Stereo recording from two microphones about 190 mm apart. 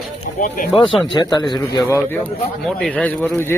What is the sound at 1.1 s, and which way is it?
Speech, 20° left (ahead or behind).